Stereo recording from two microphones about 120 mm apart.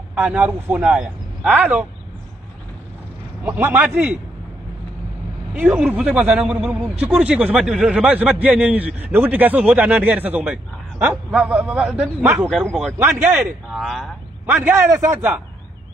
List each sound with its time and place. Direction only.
0.1 s a man's voice: 10° right (ahead or behind)
3.4 s a man's voice: 15° right (ahead or behind)
5.5 s a man's voice: 10° right (ahead or behind)
13.7 s speech: centre (ahead or behind)
14.4 s a man's voice: 15° right (ahead or behind)